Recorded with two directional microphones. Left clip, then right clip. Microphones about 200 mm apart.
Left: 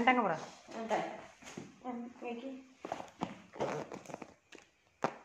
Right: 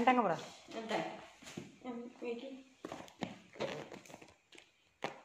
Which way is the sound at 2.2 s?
55° right (ahead or behind).